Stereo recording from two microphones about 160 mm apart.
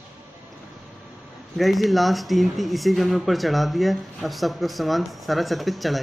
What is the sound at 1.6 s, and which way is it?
Speech, centre (ahead or behind).